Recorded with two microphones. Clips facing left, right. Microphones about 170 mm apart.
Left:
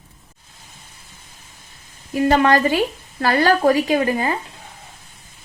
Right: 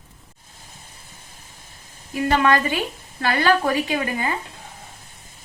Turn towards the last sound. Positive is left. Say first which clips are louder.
# left 5 dB
turn(degrees=40)  # may be behind; listen again after turning